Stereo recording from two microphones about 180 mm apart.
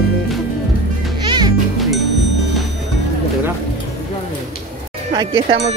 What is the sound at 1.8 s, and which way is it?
Music, centre (ahead or behind).